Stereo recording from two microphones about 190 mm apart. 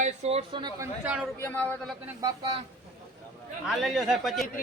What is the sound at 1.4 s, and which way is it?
Speech, 10° left (ahead or behind).